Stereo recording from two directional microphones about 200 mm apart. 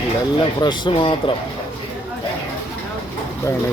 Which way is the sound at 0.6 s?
20° left (ahead or behind).